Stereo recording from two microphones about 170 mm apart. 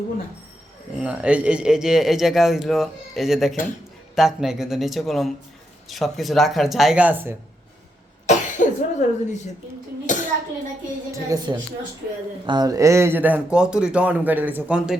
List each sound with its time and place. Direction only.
0.9 s a man's voice: 5° right (ahead or behind)
8.3 s cough: 45° left (ahead or behind)
10.1 s clapping: 45° left (ahead or behind)
11.1 s speech: 20° right (ahead or behind)